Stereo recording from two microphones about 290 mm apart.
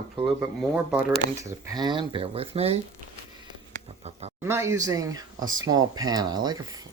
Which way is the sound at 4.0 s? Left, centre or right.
Right.